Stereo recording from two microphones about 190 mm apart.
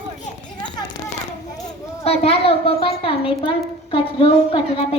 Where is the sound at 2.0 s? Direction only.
30° left (ahead or behind).